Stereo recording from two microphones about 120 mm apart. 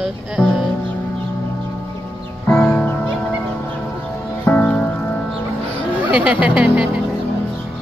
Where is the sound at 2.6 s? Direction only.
10° left (ahead or behind).